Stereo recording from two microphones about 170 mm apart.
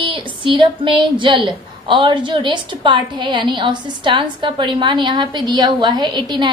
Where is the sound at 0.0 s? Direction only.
30° right (ahead or behind).